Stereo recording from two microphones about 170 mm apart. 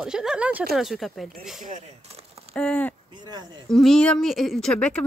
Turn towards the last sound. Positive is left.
turn(degrees=5)  # may be behind; listen again after turning